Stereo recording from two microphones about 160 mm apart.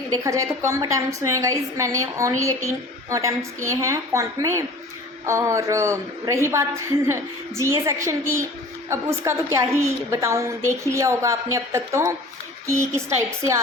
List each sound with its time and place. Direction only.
0.1 s a woman's voice: 20° right (ahead or behind)